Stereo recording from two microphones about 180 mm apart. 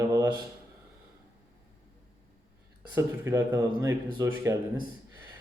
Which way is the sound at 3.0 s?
15° right (ahead or behind).